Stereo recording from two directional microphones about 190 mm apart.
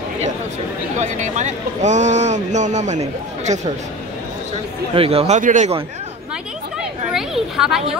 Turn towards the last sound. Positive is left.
turn(degrees=0)  # may be behind; listen again after turning